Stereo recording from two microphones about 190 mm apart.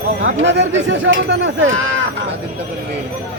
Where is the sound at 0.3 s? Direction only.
70° right (ahead or behind).